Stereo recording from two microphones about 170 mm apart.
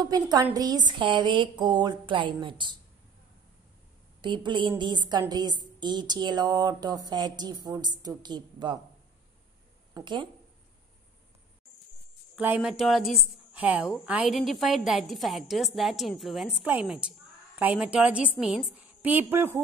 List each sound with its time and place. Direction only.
0.0 s speech: 25° right (ahead or behind)
4.2 s speech: 30° right (ahead or behind)
9.9 s speech: 30° right (ahead or behind)
12.4 s a woman's voice: 10° right (ahead or behind)